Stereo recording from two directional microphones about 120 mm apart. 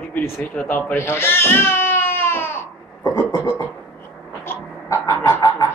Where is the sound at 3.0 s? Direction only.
35° left (ahead or behind).